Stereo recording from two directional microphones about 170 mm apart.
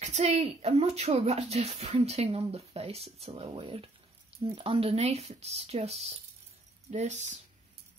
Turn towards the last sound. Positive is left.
turn(degrees=-45)  # may be behind; listen again after turning